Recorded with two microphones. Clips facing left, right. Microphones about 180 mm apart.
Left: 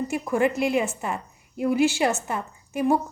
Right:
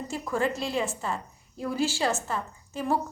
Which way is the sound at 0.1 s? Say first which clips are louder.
Left 3 dB; 15° left (ahead or behind).